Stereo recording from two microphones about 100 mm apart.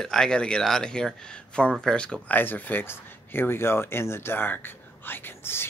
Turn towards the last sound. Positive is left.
turn(degrees=20)  # may be behind; listen again after turning